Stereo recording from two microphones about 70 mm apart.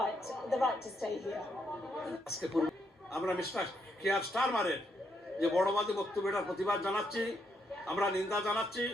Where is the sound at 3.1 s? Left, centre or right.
Left.